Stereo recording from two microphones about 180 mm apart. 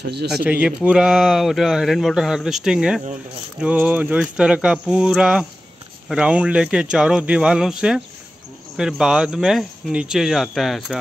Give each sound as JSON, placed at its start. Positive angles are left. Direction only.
{"t": 0.0, "sound": "speech", "side_deg": -60}
{"t": 0.3, "sound": "speech", "side_deg": -5}